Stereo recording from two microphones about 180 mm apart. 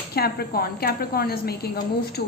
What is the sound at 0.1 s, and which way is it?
A woman's voice, 60° left (ahead or behind).